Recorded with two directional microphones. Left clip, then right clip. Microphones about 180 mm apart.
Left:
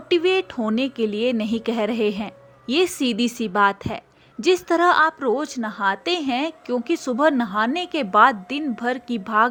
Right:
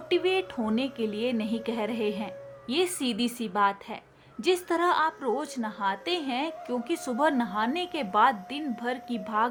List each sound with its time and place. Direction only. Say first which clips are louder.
0.1 s a woman's voice: left 7 dB; 30° left (ahead or behind)